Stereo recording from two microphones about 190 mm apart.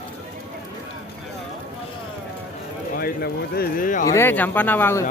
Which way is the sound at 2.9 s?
55° left (ahead or behind).